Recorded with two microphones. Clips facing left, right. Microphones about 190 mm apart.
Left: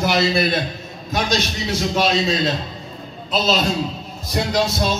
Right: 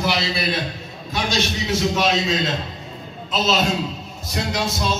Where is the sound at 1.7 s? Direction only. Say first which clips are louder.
Left 1 dB; 35° left (ahead or behind).